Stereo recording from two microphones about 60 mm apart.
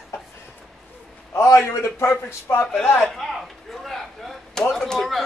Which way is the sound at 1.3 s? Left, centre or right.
Left.